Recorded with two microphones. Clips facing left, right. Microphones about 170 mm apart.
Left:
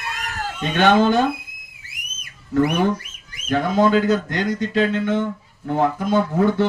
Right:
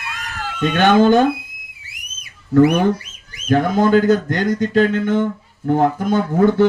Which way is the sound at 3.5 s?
50° right (ahead or behind).